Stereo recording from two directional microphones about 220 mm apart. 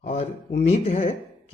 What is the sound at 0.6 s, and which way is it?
Speech, 30° left (ahead or behind).